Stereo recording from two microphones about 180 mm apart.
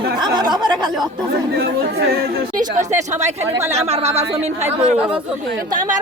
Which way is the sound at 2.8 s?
40° right (ahead or behind).